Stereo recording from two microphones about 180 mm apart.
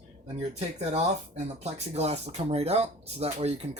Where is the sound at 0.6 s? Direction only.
35° right (ahead or behind).